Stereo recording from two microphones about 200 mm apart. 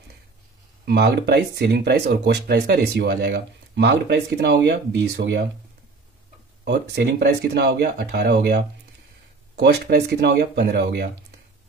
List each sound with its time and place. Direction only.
0.8 s speech: 50° right (ahead or behind)
6.6 s speech: 55° right (ahead or behind)